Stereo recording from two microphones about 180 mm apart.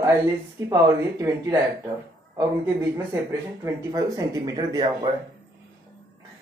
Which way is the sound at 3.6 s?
20° right (ahead or behind).